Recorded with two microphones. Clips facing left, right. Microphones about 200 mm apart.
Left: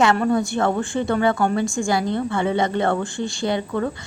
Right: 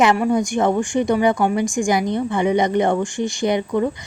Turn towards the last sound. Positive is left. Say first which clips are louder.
# right 4 dB
turn(degrees=-15)  # may be behind; listen again after turning